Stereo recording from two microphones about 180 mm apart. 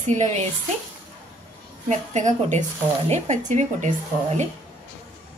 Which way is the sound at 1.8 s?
40° right (ahead or behind).